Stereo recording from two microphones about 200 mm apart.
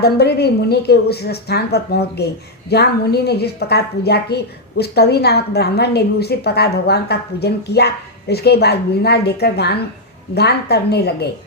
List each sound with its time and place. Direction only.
0.0 s a woman's voice: 55° left (ahead or behind)